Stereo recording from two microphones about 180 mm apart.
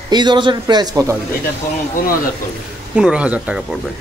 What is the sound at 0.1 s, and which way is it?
A man's voice, 25° right (ahead or behind).